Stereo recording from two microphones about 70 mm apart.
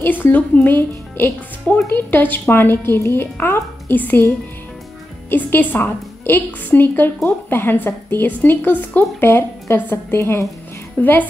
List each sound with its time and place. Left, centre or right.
0.0 s a woman's voice: left
5.3 s a woman's voice: left
11.0 s speech: left